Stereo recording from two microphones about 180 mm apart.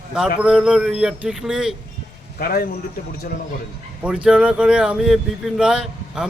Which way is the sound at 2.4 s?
55° left (ahead or behind).